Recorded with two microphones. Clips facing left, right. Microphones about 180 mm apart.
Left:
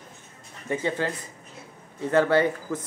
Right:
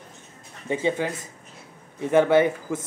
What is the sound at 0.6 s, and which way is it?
Speech, 15° right (ahead or behind).